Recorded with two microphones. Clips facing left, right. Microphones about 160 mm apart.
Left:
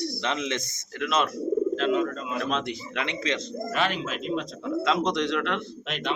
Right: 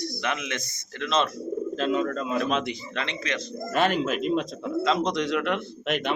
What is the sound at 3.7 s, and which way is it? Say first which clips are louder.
Speech: right 5 dB; 45° right (ahead or behind).